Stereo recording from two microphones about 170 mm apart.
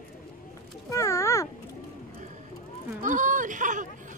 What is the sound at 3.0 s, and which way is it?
Speech, 50° right (ahead or behind).